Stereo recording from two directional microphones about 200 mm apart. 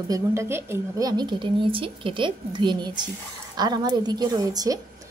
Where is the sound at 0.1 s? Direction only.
15° right (ahead or behind).